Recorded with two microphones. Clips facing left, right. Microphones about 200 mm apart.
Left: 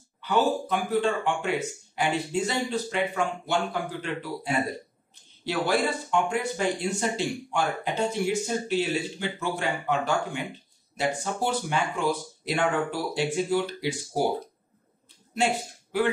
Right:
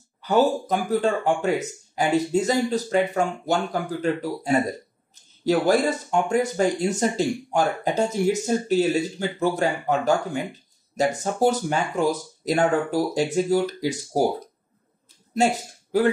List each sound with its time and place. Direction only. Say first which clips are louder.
0.2 s speech: right 4 dB; 40° right (ahead or behind)
15.3 s speech: right 5 dB; 40° right (ahead or behind)